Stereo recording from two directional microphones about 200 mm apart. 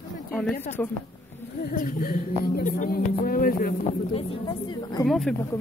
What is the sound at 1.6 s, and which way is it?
Speech, 45° left (ahead or behind).